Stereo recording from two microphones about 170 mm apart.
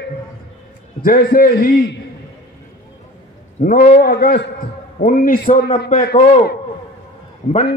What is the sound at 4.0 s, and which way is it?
Speech, 65° left (ahead or behind).